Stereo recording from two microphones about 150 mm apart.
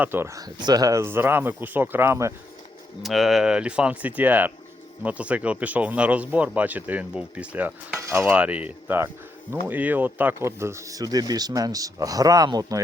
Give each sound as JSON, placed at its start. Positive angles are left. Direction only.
{"t": 0.0, "sound": "speech", "side_deg": -15}
{"t": 3.0, "sound": "speech", "side_deg": 0}